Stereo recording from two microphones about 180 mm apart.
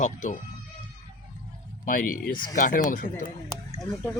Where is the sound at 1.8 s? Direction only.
50° left (ahead or behind).